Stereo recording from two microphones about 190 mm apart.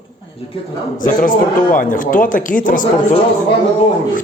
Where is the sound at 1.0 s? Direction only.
45° left (ahead or behind).